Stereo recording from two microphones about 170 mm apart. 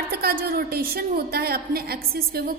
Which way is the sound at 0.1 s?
65° right (ahead or behind).